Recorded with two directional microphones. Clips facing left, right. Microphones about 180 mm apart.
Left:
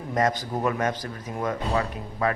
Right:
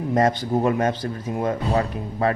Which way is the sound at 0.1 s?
30° right (ahead or behind).